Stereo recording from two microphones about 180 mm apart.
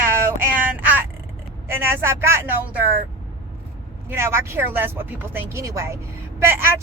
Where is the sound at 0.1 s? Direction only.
15° right (ahead or behind).